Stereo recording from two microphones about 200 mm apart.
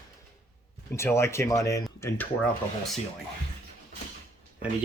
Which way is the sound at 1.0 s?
15° left (ahead or behind).